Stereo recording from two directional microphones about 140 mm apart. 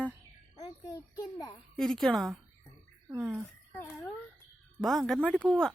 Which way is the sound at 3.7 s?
15° left (ahead or behind).